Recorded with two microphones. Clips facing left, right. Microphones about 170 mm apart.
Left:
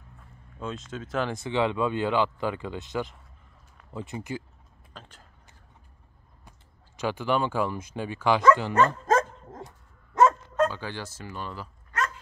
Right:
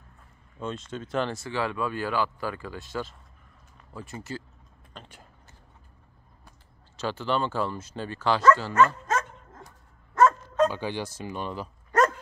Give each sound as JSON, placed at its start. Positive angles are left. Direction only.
{"t": 0.6, "sound": "speech", "side_deg": 0}
{"t": 1.3, "sound": "speech", "side_deg": 20}
{"t": 4.9, "sound": "a sound", "side_deg": 0}
{"t": 7.0, "sound": "speech", "side_deg": 15}
{"t": 8.7, "sound": "dog", "side_deg": 35}
{"t": 10.7, "sound": "speech", "side_deg": -15}
{"t": 11.9, "sound": "dog", "side_deg": -45}